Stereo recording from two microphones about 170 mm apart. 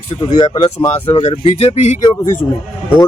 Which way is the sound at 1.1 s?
35° left (ahead or behind).